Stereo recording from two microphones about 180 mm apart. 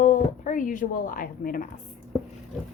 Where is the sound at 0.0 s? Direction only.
45° left (ahead or behind).